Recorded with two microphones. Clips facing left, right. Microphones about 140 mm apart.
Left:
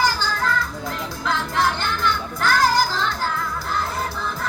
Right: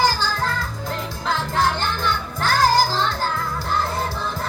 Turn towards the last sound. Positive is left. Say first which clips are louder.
# right 1 dB
turn(degrees=-30)  # may be behind; listen again after turning